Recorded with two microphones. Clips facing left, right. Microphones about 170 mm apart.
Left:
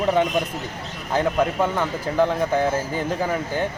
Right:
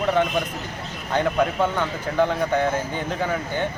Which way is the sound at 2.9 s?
5° left (ahead or behind).